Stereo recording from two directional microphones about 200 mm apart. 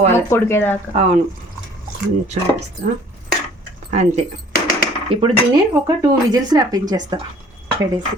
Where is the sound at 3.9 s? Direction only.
35° right (ahead or behind); by 7.2 s 20° right (ahead or behind).